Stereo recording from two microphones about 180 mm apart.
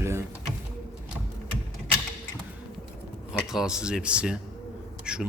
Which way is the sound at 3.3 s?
5° right (ahead or behind).